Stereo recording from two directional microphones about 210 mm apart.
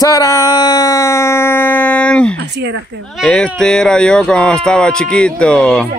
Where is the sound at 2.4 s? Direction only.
55° right (ahead or behind).